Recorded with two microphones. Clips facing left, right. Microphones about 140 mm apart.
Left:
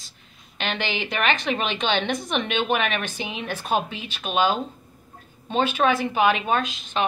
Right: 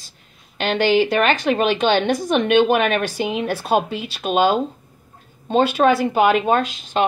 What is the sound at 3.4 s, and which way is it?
Speech, 30° right (ahead or behind).